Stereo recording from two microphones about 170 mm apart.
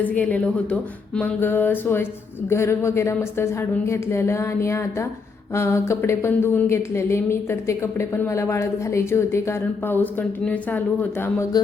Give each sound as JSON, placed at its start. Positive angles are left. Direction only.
{"t": 0.0, "sound": "a woman's voice", "side_deg": 10}